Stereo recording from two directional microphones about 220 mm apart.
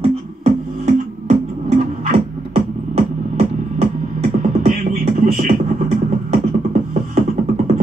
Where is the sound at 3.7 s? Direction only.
30° right (ahead or behind).